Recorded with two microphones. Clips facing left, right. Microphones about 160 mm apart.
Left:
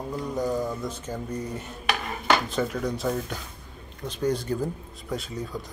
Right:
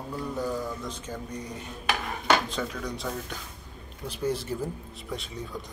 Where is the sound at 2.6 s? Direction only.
15° left (ahead or behind).